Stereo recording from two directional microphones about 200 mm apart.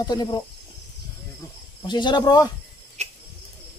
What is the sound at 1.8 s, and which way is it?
Speech, 20° left (ahead or behind).